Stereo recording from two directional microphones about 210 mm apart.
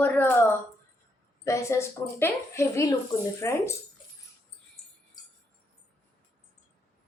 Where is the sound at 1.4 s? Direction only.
15° left (ahead or behind).